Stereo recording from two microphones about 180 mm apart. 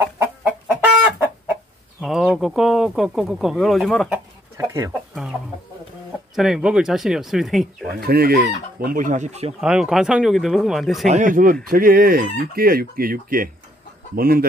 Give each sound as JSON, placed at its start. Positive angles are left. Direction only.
{"t": 0.4, "sound": "chicken", "side_deg": -5}
{"t": 2.0, "sound": "speech", "side_deg": 0}
{"t": 4.6, "sound": "speech", "side_deg": -20}
{"t": 4.9, "sound": "speech", "side_deg": -5}
{"t": 6.3, "sound": "speech", "side_deg": 0}
{"t": 7.9, "sound": "chicken", "side_deg": -60}
{"t": 9.6, "sound": "speech", "side_deg": -5}
{"t": 11.1, "sound": "chicken", "side_deg": -45}